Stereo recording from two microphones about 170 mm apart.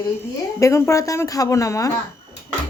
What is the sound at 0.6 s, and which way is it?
Speech, 20° left (ahead or behind).